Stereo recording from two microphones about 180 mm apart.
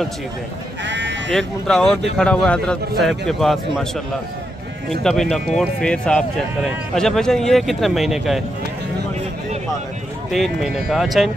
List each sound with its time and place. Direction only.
0.8 s sheep: 80° right
1.3 s speech: centre (ahead or behind)
10.3 s speech: centre (ahead or behind)